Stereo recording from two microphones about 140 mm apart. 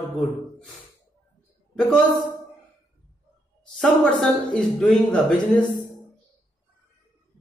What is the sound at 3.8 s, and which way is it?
A man's voice, 5° left (ahead or behind).